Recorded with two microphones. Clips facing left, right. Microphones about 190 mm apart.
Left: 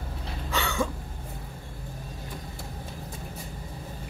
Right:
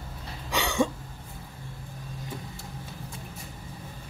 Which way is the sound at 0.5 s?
20° right (ahead or behind).